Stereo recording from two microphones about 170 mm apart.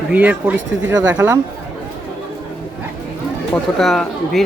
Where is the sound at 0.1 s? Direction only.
10° right (ahead or behind).